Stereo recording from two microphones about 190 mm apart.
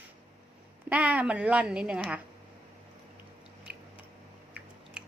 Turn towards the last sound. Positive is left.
turn(degrees=-55)  # may be behind; listen again after turning